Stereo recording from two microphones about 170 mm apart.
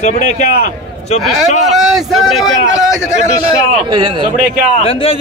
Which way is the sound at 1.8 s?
Centre (ahead or behind).